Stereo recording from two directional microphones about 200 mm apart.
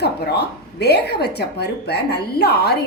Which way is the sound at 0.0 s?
55° left (ahead or behind).